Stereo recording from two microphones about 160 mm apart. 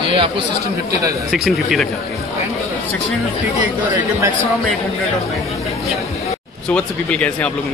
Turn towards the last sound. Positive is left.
turn(degrees=10)  # may be behind; listen again after turning